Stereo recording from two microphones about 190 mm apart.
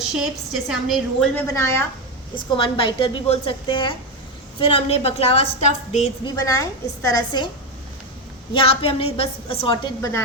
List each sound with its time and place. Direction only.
0.2 s a woman's voice: centre (ahead or behind)
1.5 s a woman's voice: 15° left (ahead or behind)
2.3 s a woman's voice: 25° left (ahead or behind)
6.2 s a woman's voice: 20° left (ahead or behind)
8.5 s a woman's voice: 30° left (ahead or behind)